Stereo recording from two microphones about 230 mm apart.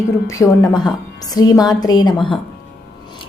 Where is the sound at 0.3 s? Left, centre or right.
Centre.